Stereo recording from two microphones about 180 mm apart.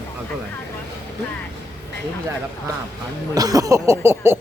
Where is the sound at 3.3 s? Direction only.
20° right (ahead or behind).